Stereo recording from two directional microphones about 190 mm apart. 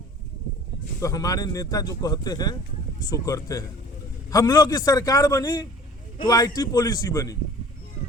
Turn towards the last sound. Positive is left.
turn(degrees=20)  # may be behind; listen again after turning